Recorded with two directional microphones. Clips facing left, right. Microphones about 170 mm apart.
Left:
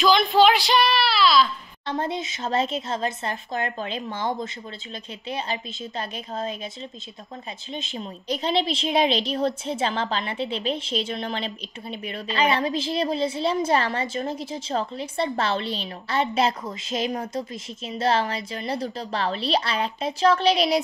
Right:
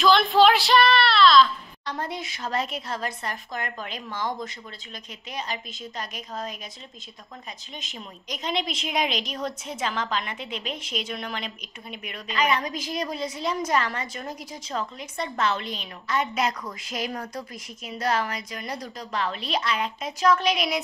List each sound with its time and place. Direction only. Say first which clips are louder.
0.0 s child singing: even; centre (ahead or behind)
1.9 s a woman's voice: left 5 dB; 25° left (ahead or behind)
7.7 s a woman's voice: left 10 dB; 30° left (ahead or behind)